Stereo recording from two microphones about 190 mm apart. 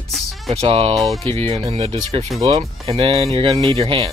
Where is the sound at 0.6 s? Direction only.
30° right (ahead or behind).